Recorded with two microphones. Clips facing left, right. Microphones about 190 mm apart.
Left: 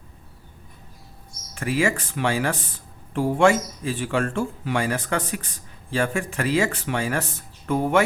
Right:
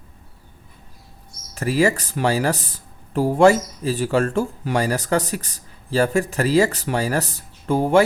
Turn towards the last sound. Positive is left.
turn(degrees=-30)  # may be behind; listen again after turning